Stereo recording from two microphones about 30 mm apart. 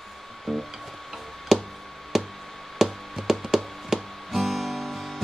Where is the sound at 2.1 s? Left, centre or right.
Centre.